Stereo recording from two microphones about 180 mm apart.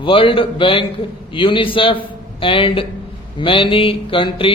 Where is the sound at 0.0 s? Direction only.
30° left (ahead or behind).